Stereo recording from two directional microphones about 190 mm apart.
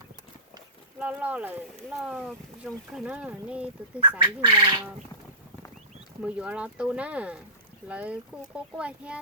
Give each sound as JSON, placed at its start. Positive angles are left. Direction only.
{"t": 0.9, "sound": "speech", "side_deg": -10}
{"t": 4.2, "sound": "speech", "side_deg": -25}
{"t": 6.2, "sound": "speech", "side_deg": -5}